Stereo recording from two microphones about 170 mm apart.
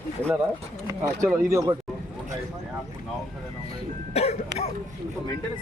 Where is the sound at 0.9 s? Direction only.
20° right (ahead or behind).